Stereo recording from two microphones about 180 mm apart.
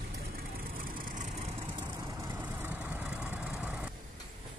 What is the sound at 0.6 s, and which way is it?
Vehicle, 50° right (ahead or behind).